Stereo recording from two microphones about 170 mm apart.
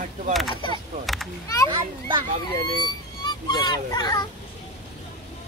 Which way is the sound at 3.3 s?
25° left (ahead or behind).